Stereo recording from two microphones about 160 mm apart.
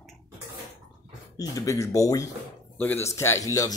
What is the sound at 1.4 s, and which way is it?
Speech, 20° left (ahead or behind).